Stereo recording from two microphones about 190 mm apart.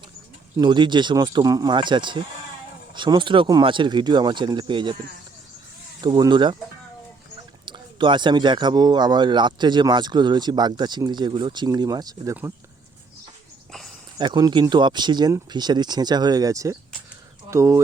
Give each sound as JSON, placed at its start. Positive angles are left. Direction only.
{"t": 0.5, "sound": "speech", "side_deg": -25}
{"t": 6.0, "sound": "speech", "side_deg": -20}
{"t": 7.6, "sound": "speech", "side_deg": -25}
{"t": 14.2, "sound": "speech", "side_deg": -25}